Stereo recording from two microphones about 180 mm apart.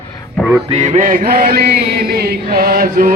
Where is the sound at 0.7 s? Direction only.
40° right (ahead or behind).